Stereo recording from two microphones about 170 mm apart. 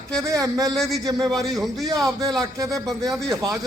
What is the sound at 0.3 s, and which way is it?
Speech, 20° right (ahead or behind).